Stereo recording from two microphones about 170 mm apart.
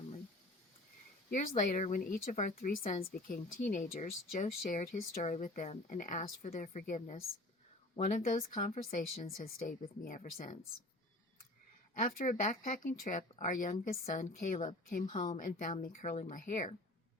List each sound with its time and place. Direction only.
1.3 s speech: 50° left (ahead or behind)
12.0 s speech: 50° left (ahead or behind)
15.0 s a woman's voice: 30° left (ahead or behind)
15.3 s speech: 55° left (ahead or behind)